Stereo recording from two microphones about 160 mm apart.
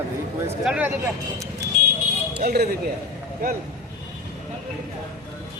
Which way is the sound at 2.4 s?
70° right (ahead or behind).